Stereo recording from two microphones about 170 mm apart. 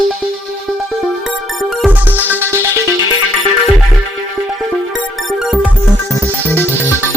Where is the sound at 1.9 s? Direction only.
10° right (ahead or behind).